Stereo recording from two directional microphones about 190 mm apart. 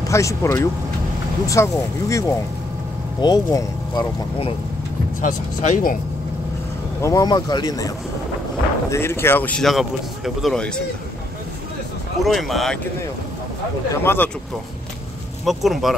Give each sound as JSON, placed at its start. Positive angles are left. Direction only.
{"t": 0.0, "sound": "speech", "side_deg": 15}
{"t": 5.2, "sound": "speech", "side_deg": 40}
{"t": 7.0, "sound": "speech", "side_deg": 15}
{"t": 8.9, "sound": "a man's voice", "side_deg": 15}
{"t": 12.2, "sound": "a man's voice", "side_deg": 0}
{"t": 14.0, "sound": "speech", "side_deg": 10}
{"t": 15.4, "sound": "a man's voice", "side_deg": 0}